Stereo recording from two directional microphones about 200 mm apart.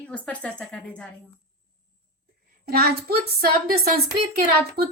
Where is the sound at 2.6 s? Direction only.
50° right (ahead or behind).